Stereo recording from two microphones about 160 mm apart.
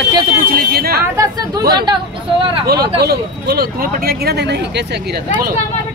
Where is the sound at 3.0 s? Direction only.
85° right.